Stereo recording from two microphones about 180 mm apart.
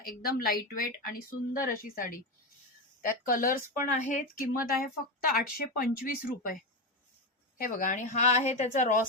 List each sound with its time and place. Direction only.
0.0 s speech: 55° left (ahead or behind)
7.6 s speech: 50° left (ahead or behind)